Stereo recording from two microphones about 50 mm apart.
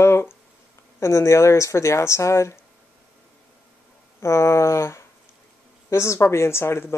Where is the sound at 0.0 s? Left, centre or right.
Left.